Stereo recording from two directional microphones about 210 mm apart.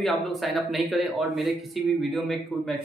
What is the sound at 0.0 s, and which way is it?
Speech, centre (ahead or behind).